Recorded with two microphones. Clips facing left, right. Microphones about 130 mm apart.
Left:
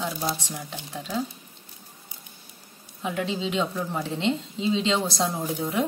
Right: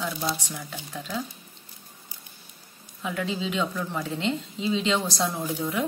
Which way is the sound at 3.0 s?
25° left (ahead or behind).